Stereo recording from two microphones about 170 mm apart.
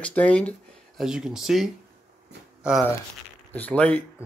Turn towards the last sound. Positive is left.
turn(degrees=10)  # may be behind; listen again after turning